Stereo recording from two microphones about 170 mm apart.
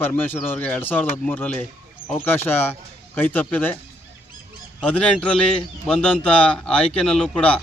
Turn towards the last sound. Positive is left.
turn(degrees=5)  # may be behind; listen again after turning